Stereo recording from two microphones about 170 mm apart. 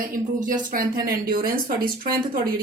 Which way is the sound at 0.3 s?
50° right (ahead or behind).